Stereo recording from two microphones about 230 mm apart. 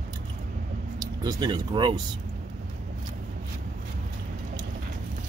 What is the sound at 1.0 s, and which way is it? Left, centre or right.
Speech, centre.